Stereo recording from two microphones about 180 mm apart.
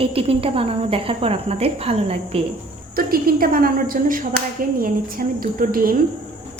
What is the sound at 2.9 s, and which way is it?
Speech, 55° right (ahead or behind).